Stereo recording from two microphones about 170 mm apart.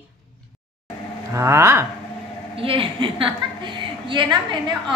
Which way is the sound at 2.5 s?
30° right (ahead or behind).